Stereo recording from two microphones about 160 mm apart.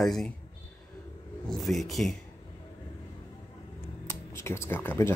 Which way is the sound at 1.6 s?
Centre (ahead or behind).